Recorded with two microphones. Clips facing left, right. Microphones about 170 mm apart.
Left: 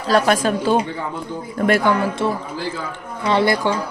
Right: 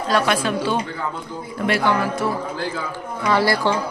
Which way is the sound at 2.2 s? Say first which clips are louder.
Left 1 dB; 25° left (ahead or behind).